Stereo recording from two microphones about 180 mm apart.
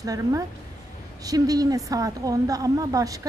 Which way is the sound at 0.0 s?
20° right (ahead or behind).